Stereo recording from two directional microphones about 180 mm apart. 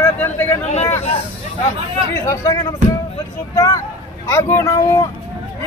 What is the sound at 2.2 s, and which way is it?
A man's voice, 20° left (ahead or behind).